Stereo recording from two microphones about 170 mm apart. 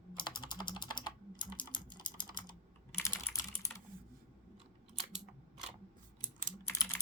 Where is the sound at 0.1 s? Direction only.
25° left (ahead or behind).